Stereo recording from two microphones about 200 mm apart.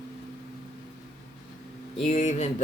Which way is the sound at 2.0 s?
35° left (ahead or behind).